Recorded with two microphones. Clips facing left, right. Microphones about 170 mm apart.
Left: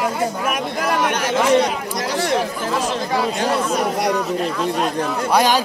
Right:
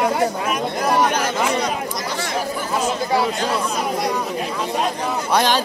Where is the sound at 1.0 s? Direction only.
70° left (ahead or behind).